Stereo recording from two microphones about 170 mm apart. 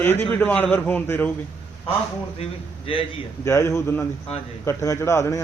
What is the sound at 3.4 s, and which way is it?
A man's voice, 15° left (ahead or behind).